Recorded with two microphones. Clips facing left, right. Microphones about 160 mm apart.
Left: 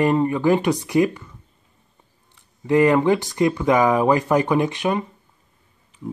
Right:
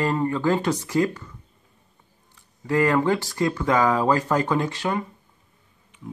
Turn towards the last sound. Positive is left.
turn(degrees=20)  # may be behind; listen again after turning